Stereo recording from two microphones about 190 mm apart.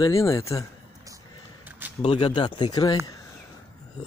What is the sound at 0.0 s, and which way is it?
Speech, 15° left (ahead or behind).